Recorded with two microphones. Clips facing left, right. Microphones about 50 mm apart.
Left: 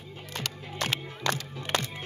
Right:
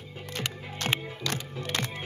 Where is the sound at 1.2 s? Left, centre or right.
Left.